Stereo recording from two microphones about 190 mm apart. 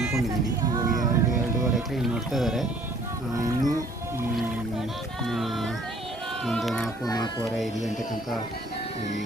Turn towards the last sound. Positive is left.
turn(degrees=0)  # may be behind; listen again after turning